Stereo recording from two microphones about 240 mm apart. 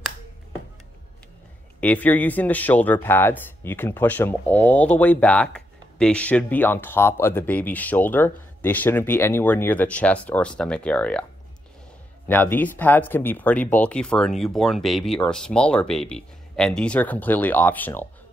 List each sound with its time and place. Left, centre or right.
1.8 s speech: centre
12.3 s speech: centre